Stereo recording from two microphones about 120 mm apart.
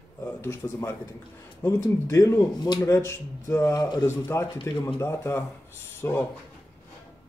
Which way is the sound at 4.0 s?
20° left (ahead or behind).